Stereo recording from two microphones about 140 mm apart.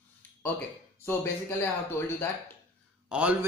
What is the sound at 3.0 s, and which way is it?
Speech, 10° right (ahead or behind).